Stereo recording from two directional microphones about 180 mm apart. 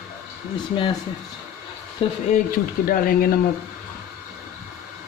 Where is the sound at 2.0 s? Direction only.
30° left (ahead or behind).